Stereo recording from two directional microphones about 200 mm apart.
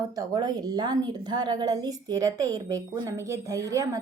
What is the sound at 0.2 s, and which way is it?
A woman's voice, 20° right (ahead or behind).